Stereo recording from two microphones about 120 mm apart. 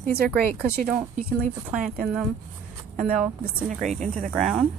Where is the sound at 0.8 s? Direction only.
5° right (ahead or behind).